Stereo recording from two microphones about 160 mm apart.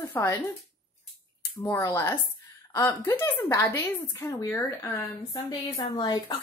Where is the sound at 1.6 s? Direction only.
15° left (ahead or behind).